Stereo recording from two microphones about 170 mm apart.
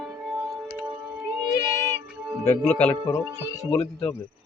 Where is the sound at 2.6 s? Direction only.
5° left (ahead or behind).